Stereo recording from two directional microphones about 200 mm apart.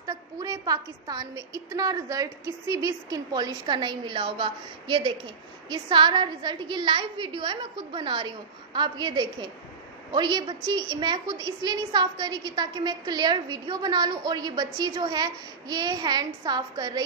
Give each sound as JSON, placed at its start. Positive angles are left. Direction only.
{"t": 0.0, "sound": "a woman's voice", "side_deg": -20}